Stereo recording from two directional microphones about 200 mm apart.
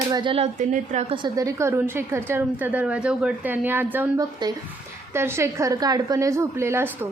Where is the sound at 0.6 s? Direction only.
40° right (ahead or behind).